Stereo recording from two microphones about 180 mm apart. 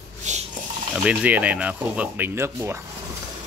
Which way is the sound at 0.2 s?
40° right (ahead or behind).